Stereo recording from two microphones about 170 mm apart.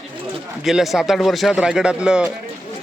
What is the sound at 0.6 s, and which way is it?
Speech, centre (ahead or behind).